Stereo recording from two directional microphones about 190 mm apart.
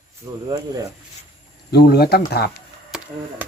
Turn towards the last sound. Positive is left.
turn(degrees=-5)  # may be behind; listen again after turning